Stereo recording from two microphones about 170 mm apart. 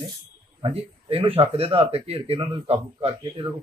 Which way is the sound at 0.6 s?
35° right (ahead or behind).